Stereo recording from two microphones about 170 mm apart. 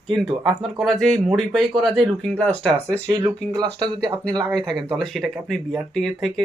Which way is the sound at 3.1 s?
20° right (ahead or behind).